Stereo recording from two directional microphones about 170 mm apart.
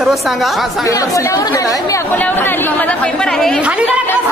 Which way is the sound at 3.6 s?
10° right (ahead or behind).